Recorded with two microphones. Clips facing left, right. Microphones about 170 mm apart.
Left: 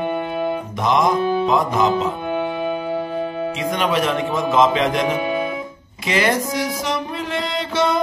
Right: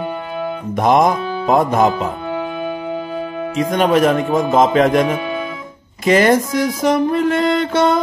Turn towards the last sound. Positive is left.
turn(degrees=-50)  # may be behind; listen again after turning